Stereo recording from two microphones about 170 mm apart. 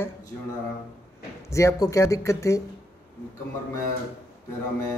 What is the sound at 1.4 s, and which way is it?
Speech, 15° left (ahead or behind).